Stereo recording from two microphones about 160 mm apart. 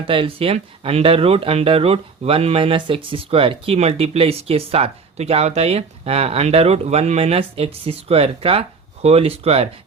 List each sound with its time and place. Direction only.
0.0 s speech: 35° right (ahead or behind)